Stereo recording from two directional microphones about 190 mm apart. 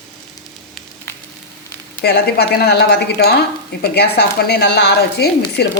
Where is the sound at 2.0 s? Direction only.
55° left (ahead or behind).